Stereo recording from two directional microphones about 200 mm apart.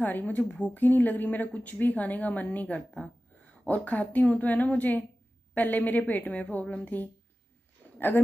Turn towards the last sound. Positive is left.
turn(degrees=5)  # may be behind; listen again after turning